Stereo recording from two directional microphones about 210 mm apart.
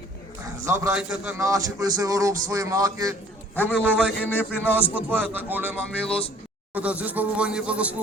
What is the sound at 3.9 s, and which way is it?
Speech, 5° right (ahead or behind).